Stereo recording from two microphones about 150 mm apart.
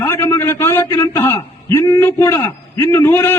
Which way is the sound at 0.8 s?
25° left (ahead or behind).